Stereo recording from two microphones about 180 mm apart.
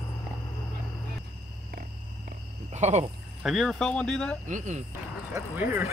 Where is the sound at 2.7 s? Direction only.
40° right (ahead or behind).